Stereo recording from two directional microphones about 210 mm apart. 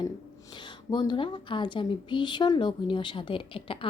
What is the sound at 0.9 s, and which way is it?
Speech, 20° left (ahead or behind).